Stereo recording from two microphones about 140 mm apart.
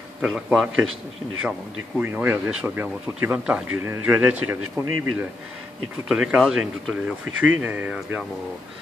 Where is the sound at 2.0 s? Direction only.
15° right (ahead or behind).